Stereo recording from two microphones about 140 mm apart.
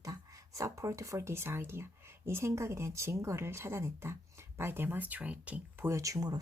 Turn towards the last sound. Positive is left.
turn(degrees=-25)  # may be behind; listen again after turning